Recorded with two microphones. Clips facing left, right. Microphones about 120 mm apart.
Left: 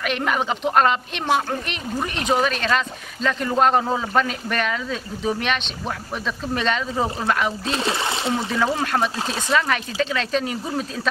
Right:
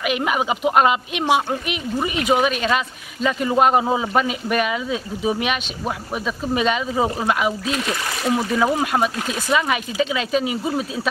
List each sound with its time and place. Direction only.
0.0 s speech: 10° right (ahead or behind)
7.7 s speech: 30° left (ahead or behind)
8.4 s speech: 5° right (ahead or behind)